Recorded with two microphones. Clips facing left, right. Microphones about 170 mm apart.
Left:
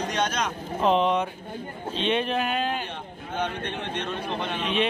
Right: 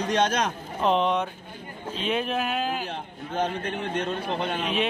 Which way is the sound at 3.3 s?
35° right (ahead or behind).